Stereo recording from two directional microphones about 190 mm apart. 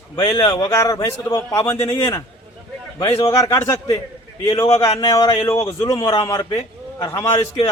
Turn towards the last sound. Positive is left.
turn(degrees=15)  # may be behind; listen again after turning